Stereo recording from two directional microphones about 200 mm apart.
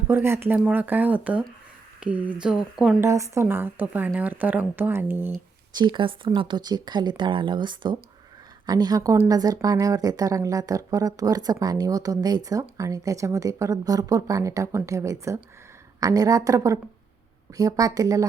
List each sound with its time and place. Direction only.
0.1 s speech: 10° right (ahead or behind)
5.7 s speech: 25° right (ahead or behind)